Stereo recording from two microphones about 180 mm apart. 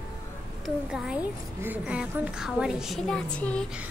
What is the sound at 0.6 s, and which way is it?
A woman's voice, 5° right (ahead or behind).